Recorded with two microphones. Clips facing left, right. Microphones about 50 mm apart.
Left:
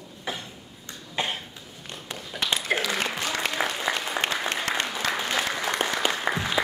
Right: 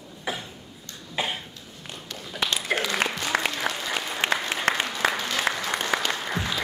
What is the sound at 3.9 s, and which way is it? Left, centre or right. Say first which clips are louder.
Applause: left 2 dB; centre.